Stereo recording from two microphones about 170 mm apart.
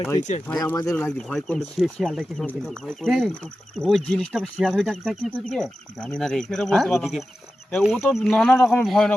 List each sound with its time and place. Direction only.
0.2 s speech: 45° left (ahead or behind)
0.6 s speech: 20° left (ahead or behind)
0.9 s speech: 5° left (ahead or behind)